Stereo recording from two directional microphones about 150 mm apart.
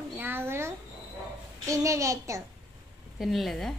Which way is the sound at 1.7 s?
20° right (ahead or behind).